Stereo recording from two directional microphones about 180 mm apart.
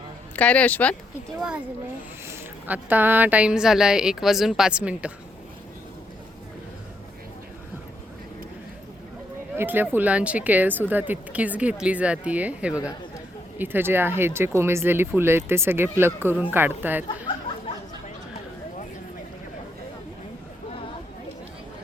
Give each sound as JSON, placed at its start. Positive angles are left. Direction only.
{"t": 0.3, "sound": "speech", "side_deg": 5}
{"t": 1.4, "sound": "a woman's voice", "side_deg": -5}
{"t": 9.6, "sound": "speech", "side_deg": -10}
{"t": 17.3, "sound": "a sound", "side_deg": 25}